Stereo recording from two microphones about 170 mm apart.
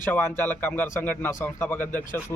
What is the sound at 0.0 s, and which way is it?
Speech, 10° left (ahead or behind).